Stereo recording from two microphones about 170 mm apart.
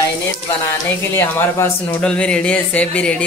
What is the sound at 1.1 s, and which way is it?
Speech, 15° left (ahead or behind).